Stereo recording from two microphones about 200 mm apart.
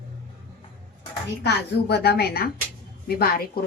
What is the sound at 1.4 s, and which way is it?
A woman's voice, 55° left (ahead or behind).